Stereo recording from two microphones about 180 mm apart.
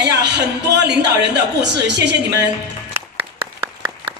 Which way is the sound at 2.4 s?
10° right (ahead or behind).